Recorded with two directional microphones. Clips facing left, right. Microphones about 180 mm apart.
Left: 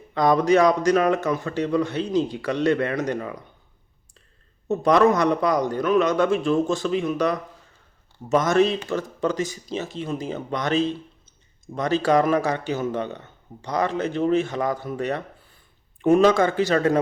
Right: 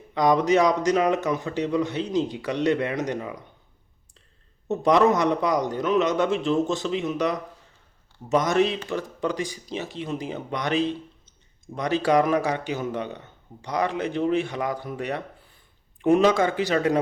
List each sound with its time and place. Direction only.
0.1 s speech: 15° right (ahead or behind)
4.7 s a man's voice: 20° right (ahead or behind)